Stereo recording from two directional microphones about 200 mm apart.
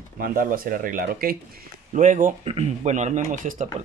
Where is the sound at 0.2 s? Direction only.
45° right (ahead or behind).